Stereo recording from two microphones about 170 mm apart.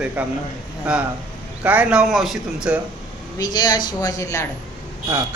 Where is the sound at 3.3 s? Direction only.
25° left (ahead or behind).